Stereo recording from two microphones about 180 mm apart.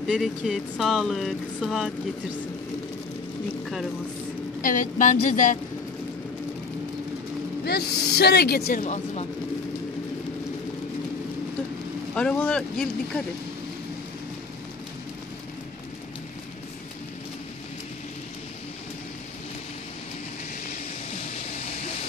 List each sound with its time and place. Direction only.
0.0 s speech: centre (ahead or behind)
4.6 s speech: 50° left (ahead or behind)
7.6 s speech: 65° left (ahead or behind); by 9.2 s 45° left (ahead or behind)
12.2 s speech: 5° left (ahead or behind)
21.4 s music: 35° left (ahead or behind)